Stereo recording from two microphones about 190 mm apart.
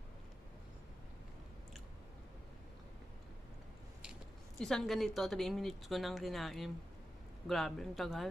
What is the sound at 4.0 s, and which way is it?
Speech, centre (ahead or behind).